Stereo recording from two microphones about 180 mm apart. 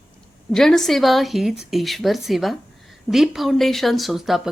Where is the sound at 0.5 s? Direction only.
Centre (ahead or behind).